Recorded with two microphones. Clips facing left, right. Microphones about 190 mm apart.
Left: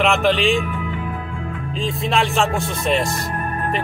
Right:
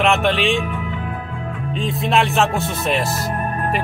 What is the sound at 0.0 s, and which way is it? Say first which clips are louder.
Speech: even; centre (ahead or behind).